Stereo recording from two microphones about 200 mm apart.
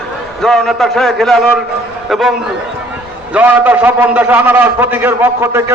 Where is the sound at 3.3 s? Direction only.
5° right (ahead or behind).